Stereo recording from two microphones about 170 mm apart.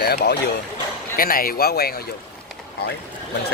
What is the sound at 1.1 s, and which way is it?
Speech, 60° left (ahead or behind).